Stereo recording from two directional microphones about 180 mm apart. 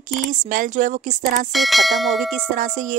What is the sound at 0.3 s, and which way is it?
Speech, 45° right (ahead or behind).